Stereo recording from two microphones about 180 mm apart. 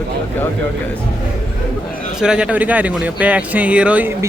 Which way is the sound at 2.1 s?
5° right (ahead or behind).